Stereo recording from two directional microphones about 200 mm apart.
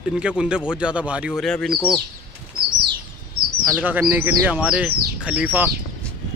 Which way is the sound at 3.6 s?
5° right (ahead or behind).